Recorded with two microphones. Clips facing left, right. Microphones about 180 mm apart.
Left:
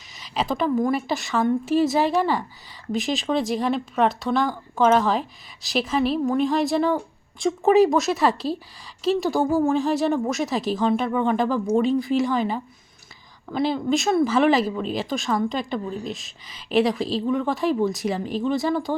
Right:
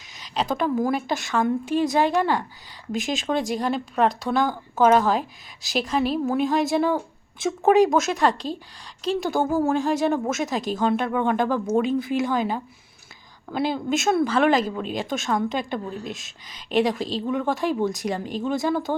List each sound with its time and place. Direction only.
0.2 s a woman's voice: centre (ahead or behind)